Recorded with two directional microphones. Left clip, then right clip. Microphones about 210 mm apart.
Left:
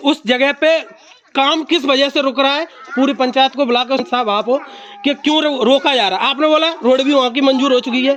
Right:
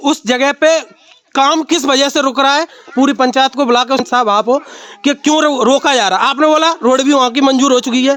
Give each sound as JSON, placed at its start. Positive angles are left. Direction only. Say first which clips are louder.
{"t": 0.0, "sound": "a man's voice", "louder": "right 1 dB", "side_deg": -40}